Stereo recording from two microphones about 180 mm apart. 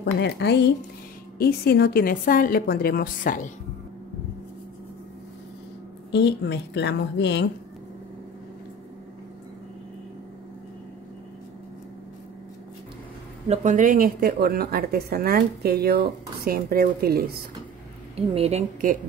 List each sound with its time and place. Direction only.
0.0 s a woman's voice: 70° left (ahead or behind); by 3.5 s 50° left (ahead or behind)
6.1 s a woman's voice: 70° left (ahead or behind)
13.5 s speech: 45° right (ahead or behind)
18.1 s a woman's voice: 35° right (ahead or behind)